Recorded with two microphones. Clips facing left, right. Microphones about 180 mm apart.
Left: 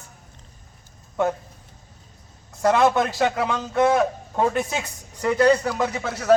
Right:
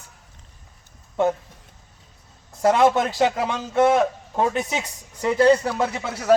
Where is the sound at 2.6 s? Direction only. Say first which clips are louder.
Right 1 dB; 25° right (ahead or behind).